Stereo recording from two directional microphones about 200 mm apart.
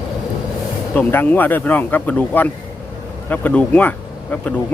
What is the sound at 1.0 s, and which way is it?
Speech, 10° left (ahead or behind).